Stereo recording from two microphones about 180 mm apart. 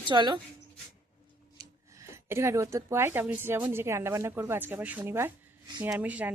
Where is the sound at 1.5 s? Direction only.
15° right (ahead or behind).